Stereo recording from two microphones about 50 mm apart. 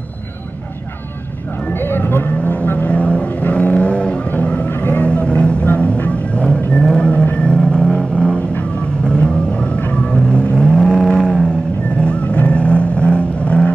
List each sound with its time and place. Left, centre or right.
1.7 s vehicle: left; by 11.4 s centre
12.0 s vehicle: left